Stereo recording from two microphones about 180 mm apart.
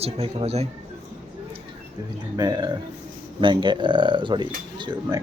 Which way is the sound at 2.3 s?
20° right (ahead or behind).